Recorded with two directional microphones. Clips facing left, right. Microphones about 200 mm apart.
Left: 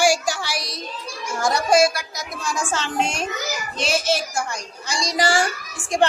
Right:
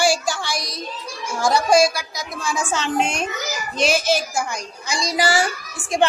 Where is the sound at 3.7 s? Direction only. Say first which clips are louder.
Right 5 dB; 30° left (ahead or behind).